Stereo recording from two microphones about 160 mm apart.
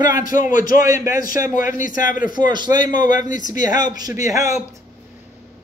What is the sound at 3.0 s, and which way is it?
Speech, 55° left (ahead or behind).